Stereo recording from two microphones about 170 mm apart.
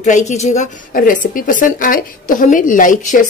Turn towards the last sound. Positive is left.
turn(degrees=50)  # may be behind; listen again after turning